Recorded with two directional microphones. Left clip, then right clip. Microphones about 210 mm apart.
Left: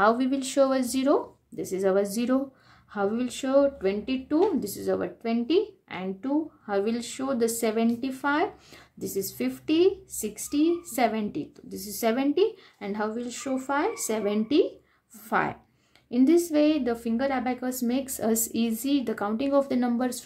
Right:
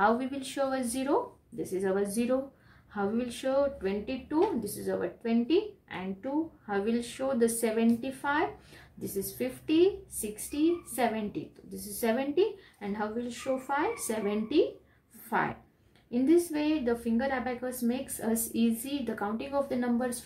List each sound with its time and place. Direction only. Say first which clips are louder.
0.0 s a woman's voice: left 4 dB; 45° left (ahead or behind)